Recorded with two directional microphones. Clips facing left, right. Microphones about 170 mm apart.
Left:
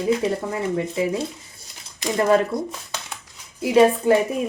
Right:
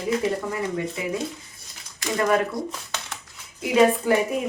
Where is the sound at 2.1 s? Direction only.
25° left (ahead or behind).